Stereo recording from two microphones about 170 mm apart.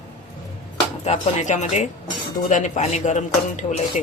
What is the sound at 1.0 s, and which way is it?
Speech, 45° left (ahead or behind).